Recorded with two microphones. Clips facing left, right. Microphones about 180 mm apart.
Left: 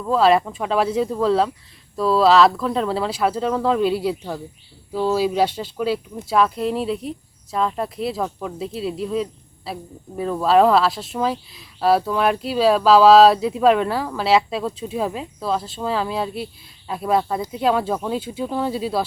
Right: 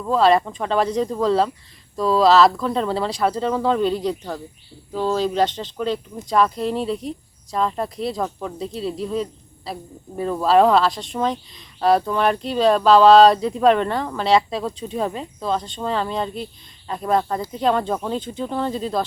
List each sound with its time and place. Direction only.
0.0 s speech: centre (ahead or behind)